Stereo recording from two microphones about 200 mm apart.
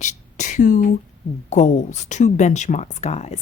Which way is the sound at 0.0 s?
35° left (ahead or behind).